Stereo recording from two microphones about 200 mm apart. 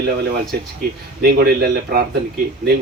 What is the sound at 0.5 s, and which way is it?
Speech, 50° right (ahead or behind).